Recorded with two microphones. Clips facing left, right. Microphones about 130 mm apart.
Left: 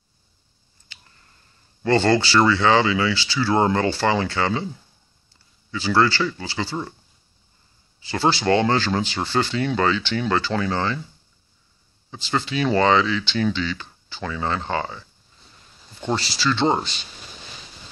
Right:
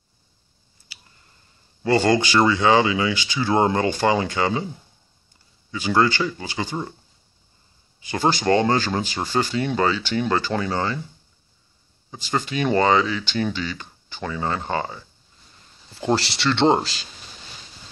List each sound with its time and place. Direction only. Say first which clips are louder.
0.9 s a sound: even; 10° right (ahead or behind)
1.8 s speech: even; 15° right (ahead or behind)
5.7 s speech: even; 15° right (ahead or behind)
8.0 s speech: even; 20° right (ahead or behind)
8.3 s speech: even; 40° right (ahead or behind)
9.1 s speech: even; 10° right (ahead or behind)
9.5 s speech: even; 40° right (ahead or behind)
10.7 s speech: even; 15° right (ahead or behind)
12.2 s speech: left 1 dB; 45° right (ahead or behind)
14.2 s speech: even; 30° right (ahead or behind)
16.2 s speech: right 1 dB; 70° right (ahead or behind)